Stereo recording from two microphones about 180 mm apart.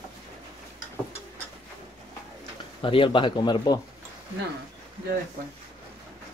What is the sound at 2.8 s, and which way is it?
Speech, 30° left (ahead or behind).